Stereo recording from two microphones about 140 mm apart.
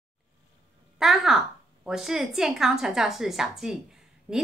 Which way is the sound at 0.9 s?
5° right (ahead or behind).